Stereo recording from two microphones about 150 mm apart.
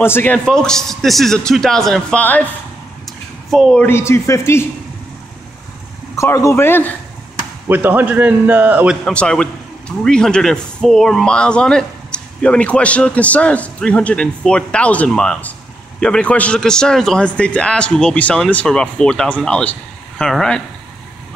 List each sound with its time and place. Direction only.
0.0 s a man's voice: 15° left (ahead or behind)
0.5 s a man's voice: 5° left (ahead or behind)
3.4 s speech: centre (ahead or behind)
3.8 s a man's voice: 15° left (ahead or behind)
6.1 s a man's voice: 20° left (ahead or behind)
7.6 s a man's voice: 10° right (ahead or behind)
9.0 s a man's voice: 5° left (ahead or behind)